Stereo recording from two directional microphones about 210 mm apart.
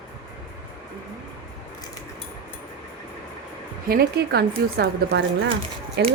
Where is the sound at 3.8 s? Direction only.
45° right (ahead or behind).